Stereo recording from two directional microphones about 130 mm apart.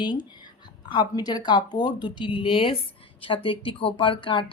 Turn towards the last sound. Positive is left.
turn(degrees=40)  # may be behind; listen again after turning